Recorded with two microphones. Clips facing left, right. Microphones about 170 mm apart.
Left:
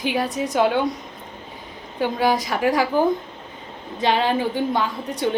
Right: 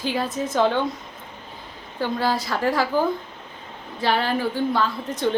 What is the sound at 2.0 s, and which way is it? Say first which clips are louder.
Speech: left 3 dB; 15° left (ahead or behind).